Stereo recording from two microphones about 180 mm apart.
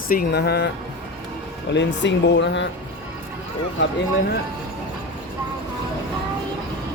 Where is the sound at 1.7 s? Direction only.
75° left (ahead or behind).